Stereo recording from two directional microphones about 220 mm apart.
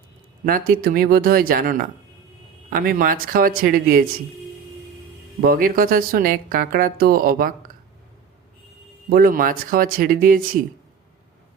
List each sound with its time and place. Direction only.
0.7 s speech: 40° right (ahead or behind)
5.4 s speech: 40° right (ahead or behind)
9.0 s speech: 40° right (ahead or behind)